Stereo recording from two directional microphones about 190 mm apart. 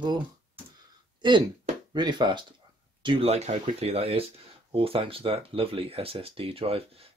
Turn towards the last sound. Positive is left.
turn(degrees=-30)  # may be behind; listen again after turning